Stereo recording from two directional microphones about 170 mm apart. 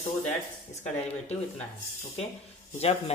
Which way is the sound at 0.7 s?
40° left (ahead or behind).